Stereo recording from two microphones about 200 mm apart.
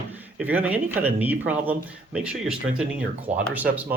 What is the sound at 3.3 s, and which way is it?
Speech, 40° right (ahead or behind).